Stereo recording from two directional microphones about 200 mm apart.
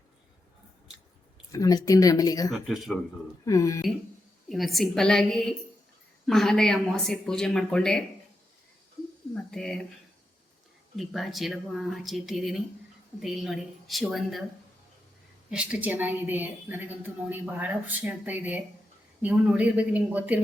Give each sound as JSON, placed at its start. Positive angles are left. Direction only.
{"t": 1.5, "sound": "speech", "side_deg": 15}
{"t": 2.5, "sound": "speech", "side_deg": 0}
{"t": 3.4, "sound": "speech", "side_deg": 15}
{"t": 4.4, "sound": "speech", "side_deg": 0}
{"t": 9.3, "sound": "a sound", "side_deg": 5}
{"t": 10.9, "sound": "speech", "side_deg": 0}
{"t": 15.4, "sound": "a woman's voice", "side_deg": -5}